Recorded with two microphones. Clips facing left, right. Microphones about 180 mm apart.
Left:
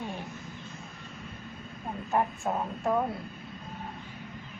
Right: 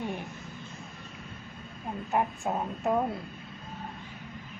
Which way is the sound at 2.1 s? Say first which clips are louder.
Even; 15° right (ahead or behind).